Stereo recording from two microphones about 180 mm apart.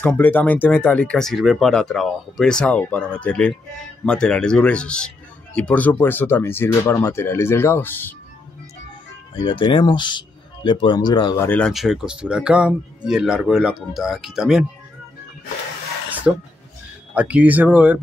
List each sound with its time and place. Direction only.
0.0 s speech: 10° left (ahead or behind)
9.3 s speech: 25° left (ahead or behind)
11.4 s speech: 10° left (ahead or behind)
11.7 s speech: centre (ahead or behind)
16.3 s speech: 5° right (ahead or behind)